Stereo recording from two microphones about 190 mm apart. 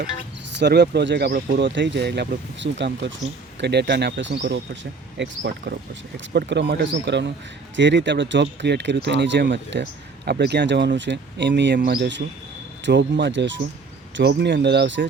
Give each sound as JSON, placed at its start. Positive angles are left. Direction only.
{"t": 0.5, "sound": "speech", "side_deg": -65}
{"t": 10.2, "sound": "speech", "side_deg": -55}